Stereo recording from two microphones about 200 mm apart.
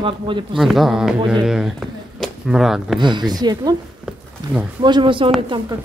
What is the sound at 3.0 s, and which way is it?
Speech, 25° right (ahead or behind).